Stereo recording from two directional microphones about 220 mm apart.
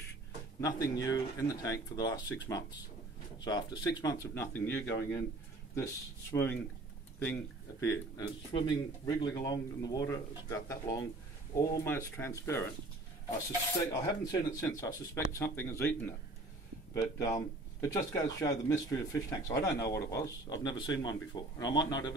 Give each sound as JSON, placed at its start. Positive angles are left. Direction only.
{"t": 0.6, "sound": "speech", "side_deg": 15}
{"t": 6.3, "sound": "speech", "side_deg": 10}
{"t": 7.8, "sound": "speech", "side_deg": 15}
{"t": 16.9, "sound": "speech", "side_deg": 15}